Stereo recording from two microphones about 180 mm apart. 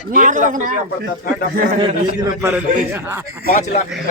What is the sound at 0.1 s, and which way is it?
Speech, 45° right (ahead or behind).